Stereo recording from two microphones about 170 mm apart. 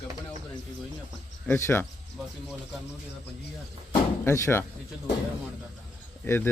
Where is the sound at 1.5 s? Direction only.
15° left (ahead or behind).